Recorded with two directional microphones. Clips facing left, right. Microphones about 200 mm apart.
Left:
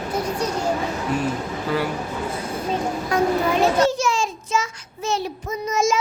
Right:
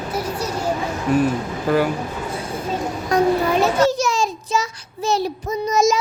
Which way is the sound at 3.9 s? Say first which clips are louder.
Right 2 dB; 40° right (ahead or behind).